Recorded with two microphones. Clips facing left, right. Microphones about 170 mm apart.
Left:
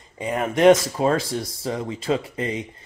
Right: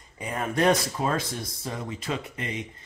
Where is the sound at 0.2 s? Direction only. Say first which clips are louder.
Left 7 dB; 20° left (ahead or behind).